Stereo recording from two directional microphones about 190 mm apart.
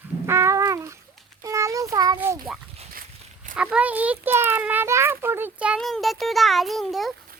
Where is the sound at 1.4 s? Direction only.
15° right (ahead or behind).